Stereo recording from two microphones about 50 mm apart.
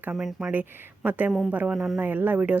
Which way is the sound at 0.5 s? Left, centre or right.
Right.